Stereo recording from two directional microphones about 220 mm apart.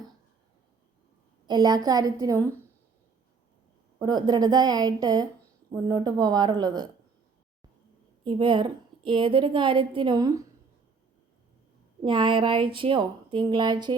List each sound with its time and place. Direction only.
1.5 s a woman's voice: 20° right (ahead or behind)
4.0 s a woman's voice: 20° right (ahead or behind)
8.2 s a woman's voice: 25° right (ahead or behind)
12.0 s a woman's voice: 20° right (ahead or behind)